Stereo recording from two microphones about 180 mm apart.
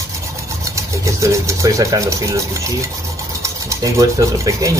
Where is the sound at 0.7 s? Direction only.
15° right (ahead or behind).